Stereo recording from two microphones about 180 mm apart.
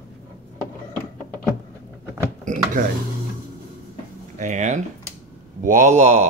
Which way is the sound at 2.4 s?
45° right (ahead or behind).